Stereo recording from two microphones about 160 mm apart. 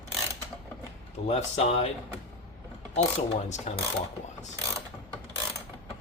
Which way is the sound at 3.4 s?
45° left (ahead or behind).